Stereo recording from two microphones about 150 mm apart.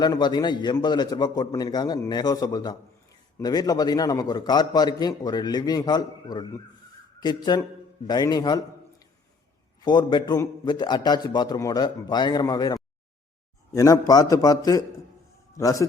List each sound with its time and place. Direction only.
0.0 s a man's voice: 30° left (ahead or behind)
9.8 s a man's voice: 30° left (ahead or behind)